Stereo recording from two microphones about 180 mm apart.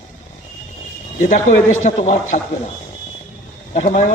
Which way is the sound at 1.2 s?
45° left (ahead or behind).